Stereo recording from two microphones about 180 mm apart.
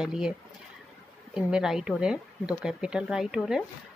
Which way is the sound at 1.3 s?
5° right (ahead or behind).